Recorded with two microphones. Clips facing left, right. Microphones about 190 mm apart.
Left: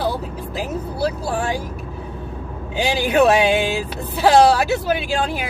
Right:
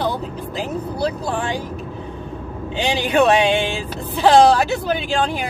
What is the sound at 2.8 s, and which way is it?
Speech, 5° left (ahead or behind).